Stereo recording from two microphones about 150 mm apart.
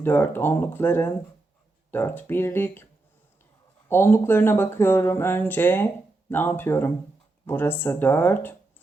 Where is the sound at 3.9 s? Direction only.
15° left (ahead or behind).